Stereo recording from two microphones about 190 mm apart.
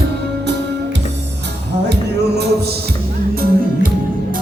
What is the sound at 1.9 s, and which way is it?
Music, 60° right (ahead or behind).